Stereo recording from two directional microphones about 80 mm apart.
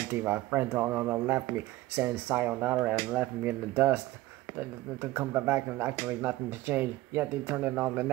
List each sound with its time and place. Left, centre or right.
0.1 s speech: right